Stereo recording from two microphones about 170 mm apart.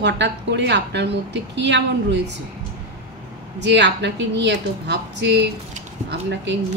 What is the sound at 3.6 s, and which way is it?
Speech, 90° right.